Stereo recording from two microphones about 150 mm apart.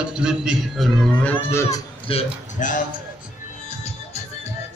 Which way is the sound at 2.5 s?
60° left (ahead or behind).